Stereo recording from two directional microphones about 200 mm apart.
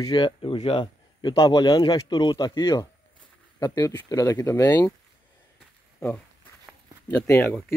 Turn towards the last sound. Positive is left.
turn(degrees=10)  # may be behind; listen again after turning